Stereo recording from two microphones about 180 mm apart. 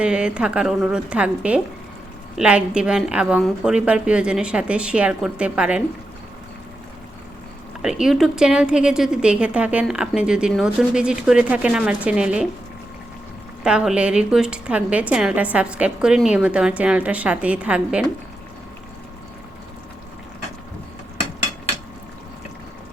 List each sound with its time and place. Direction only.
0.0 s a woman's voice: 5° right (ahead or behind)
7.8 s a woman's voice: 5° right (ahead or behind)
13.7 s a woman's voice: 5° right (ahead or behind)